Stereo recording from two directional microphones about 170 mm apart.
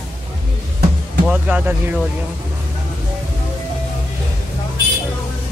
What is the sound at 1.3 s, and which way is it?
Speech, 10° right (ahead or behind).